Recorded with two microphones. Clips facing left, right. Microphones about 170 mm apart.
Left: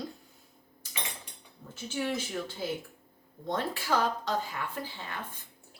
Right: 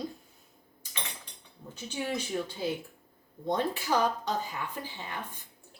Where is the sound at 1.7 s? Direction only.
15° right (ahead or behind).